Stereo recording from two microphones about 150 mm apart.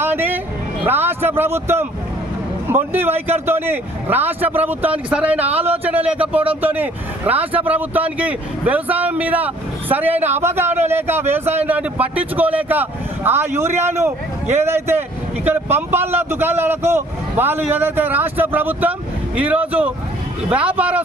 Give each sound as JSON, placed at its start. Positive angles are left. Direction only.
{"t": 0.0, "sound": "music", "side_deg": -15}
{"t": 0.9, "sound": "a man's voice", "side_deg": -15}